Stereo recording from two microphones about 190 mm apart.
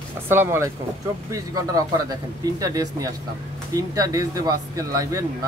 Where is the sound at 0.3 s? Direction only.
15° right (ahead or behind).